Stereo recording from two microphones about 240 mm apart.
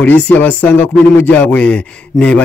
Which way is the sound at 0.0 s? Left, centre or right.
Centre.